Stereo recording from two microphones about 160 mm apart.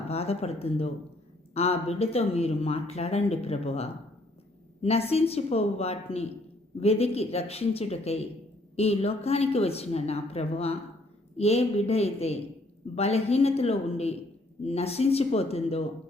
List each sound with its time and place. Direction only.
0.1 s a woman's voice: 40° left (ahead or behind)